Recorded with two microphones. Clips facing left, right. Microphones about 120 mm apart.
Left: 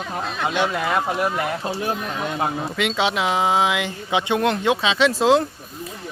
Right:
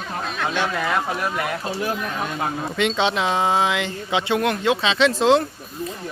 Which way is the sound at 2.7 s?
5° left (ahead or behind).